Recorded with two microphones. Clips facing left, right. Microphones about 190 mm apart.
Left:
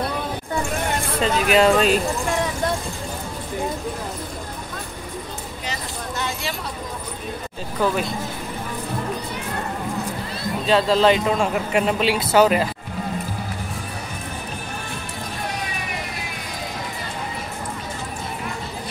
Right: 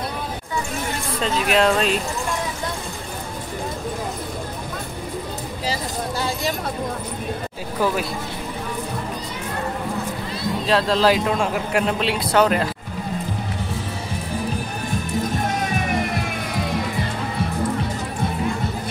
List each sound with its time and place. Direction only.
1.2 s a man's voice: centre (ahead or behind)
5.7 s a sound: 35° right (ahead or behind)
7.8 s a man's voice: 5° right (ahead or behind)
10.7 s a man's voice: centre (ahead or behind)